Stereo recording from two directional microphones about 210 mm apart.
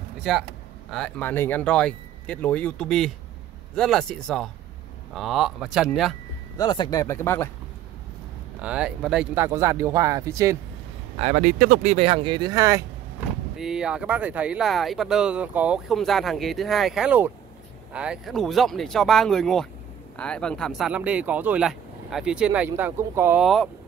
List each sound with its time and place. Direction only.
0.2 s speech: centre (ahead or behind)
6.6 s speech: 20° left (ahead or behind)
8.5 s speech: 5° right (ahead or behind)
11.1 s speech: 35° right (ahead or behind); by 12.8 s 15° right (ahead or behind)
13.6 s speech: 5° right (ahead or behind)
23.4 s speech: centre (ahead or behind)